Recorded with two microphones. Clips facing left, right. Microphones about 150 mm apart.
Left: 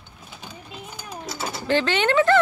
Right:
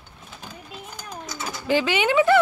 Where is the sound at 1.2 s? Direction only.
30° left (ahead or behind).